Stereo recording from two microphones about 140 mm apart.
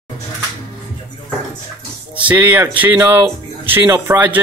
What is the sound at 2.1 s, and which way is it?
Speech, 15° right (ahead or behind).